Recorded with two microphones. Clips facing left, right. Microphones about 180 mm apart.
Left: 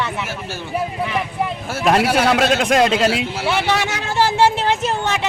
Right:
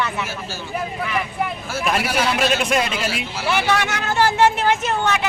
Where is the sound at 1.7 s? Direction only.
70° left (ahead or behind).